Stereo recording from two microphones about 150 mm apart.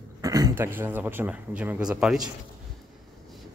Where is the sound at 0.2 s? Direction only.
25° right (ahead or behind).